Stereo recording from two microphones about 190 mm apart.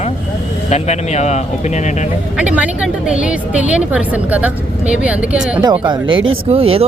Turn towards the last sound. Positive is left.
turn(degrees=-30)  # may be behind; listen again after turning